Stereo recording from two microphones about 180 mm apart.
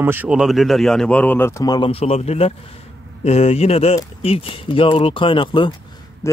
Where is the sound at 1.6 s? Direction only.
25° left (ahead or behind).